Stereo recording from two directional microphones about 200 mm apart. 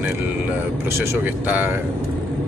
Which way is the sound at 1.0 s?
10° right (ahead or behind).